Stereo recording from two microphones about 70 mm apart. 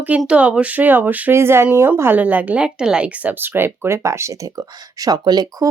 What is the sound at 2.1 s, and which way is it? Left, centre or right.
Speech, right.